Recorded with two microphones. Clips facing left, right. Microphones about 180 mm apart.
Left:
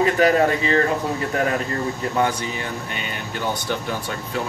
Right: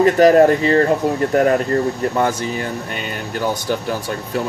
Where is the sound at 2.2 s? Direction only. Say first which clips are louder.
Right 4 dB; 45° right (ahead or behind).